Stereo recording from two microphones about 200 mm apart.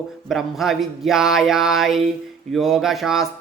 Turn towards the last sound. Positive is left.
turn(degrees=0)  # may be behind; listen again after turning